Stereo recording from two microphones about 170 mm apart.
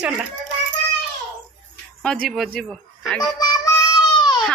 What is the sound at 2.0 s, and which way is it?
Speech, 5° left (ahead or behind).